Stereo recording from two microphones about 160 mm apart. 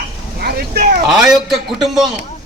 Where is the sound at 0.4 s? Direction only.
75° right (ahead or behind).